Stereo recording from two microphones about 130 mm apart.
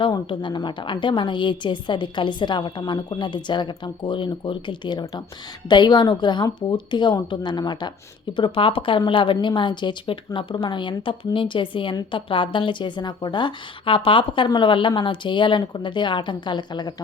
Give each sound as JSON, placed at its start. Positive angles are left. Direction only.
{"t": 0.0, "sound": "speech", "side_deg": 40}